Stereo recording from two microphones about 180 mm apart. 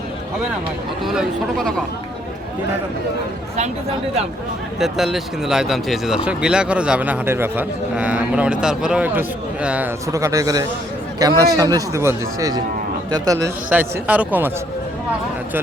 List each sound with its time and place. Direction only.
1.0 s speech: centre (ahead or behind)
4.8 s speech: centre (ahead or behind); by 13.5 s 20° right (ahead or behind)
13.7 s speech: 10° right (ahead or behind)